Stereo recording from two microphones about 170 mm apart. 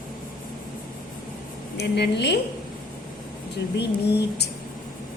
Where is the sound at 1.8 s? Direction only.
85° left.